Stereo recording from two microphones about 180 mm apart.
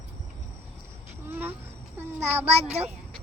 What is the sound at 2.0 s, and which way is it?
Child singing, 10° right (ahead or behind).